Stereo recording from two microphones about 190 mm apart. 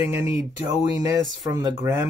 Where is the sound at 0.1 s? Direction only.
15° right (ahead or behind).